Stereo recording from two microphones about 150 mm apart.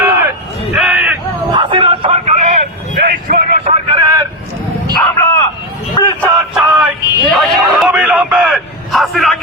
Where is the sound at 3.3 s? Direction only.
60° right (ahead or behind).